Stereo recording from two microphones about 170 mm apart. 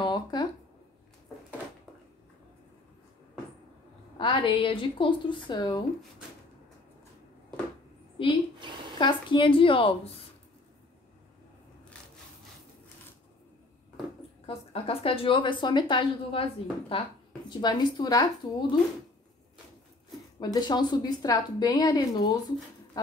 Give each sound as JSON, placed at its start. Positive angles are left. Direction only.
{"t": 0.0, "sound": "a sound", "side_deg": 25}
{"t": 4.2, "sound": "a woman's voice", "side_deg": 30}
{"t": 8.2, "sound": "speech", "side_deg": 30}
{"t": 8.5, "sound": "a sound", "side_deg": -30}
{"t": 8.9, "sound": "a woman's voice", "side_deg": 25}
{"t": 14.4, "sound": "a woman's voice", "side_deg": 35}
{"t": 20.3, "sound": "a woman's voice", "side_deg": 25}